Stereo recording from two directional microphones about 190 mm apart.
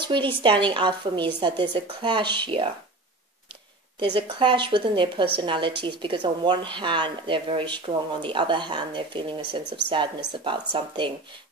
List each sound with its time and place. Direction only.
0.0 s speech: 25° right (ahead or behind)
4.0 s speech: 25° right (ahead or behind)